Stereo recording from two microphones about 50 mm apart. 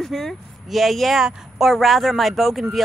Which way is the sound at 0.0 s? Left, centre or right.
Centre.